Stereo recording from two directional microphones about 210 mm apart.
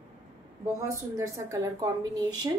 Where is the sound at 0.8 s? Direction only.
15° right (ahead or behind).